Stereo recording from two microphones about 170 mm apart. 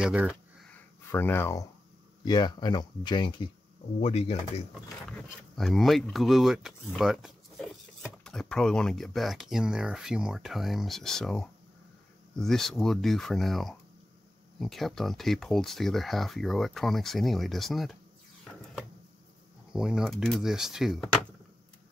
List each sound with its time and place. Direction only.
0.0 s speech: 10° right (ahead or behind)
0.7 s a sound: 15° left (ahead or behind)
2.2 s speech: 25° left (ahead or behind)
4.0 s speech: 40° left (ahead or behind)
5.6 s speech: centre (ahead or behind)
19.7 s speech: 5° right (ahead or behind)